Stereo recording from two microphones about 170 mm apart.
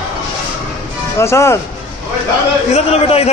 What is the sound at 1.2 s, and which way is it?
Speech, 15° left (ahead or behind).